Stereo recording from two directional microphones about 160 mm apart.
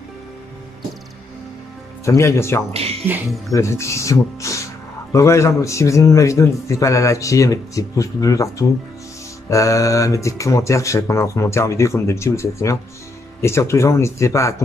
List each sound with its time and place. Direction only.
2.0 s speech: 20° left (ahead or behind)
2.7 s speech: 40° right (ahead or behind)
3.5 s a man's voice: 20° left (ahead or behind)